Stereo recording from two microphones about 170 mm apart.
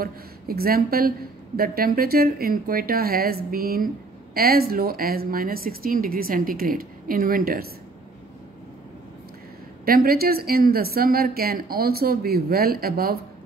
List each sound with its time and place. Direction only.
0.0 s speech: 60° right (ahead or behind)
9.8 s speech: 60° right (ahead or behind)